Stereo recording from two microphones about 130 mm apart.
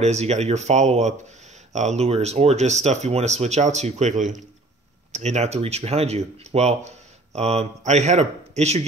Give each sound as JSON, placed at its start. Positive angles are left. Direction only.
{"t": 0.0, "sound": "speech", "side_deg": -60}